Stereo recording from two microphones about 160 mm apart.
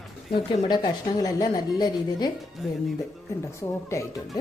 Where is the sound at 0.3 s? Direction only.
30° left (ahead or behind).